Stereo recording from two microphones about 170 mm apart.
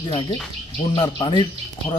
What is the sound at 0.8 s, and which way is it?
Speech, 45° left (ahead or behind).